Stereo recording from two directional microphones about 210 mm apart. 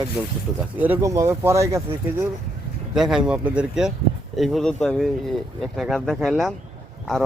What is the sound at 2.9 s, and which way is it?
Speech, centre (ahead or behind).